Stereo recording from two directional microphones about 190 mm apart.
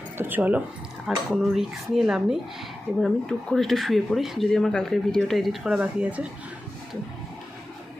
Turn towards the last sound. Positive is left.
turn(degrees=-5)  # may be behind; listen again after turning